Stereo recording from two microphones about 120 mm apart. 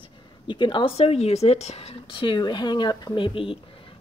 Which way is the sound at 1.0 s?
60° left (ahead or behind).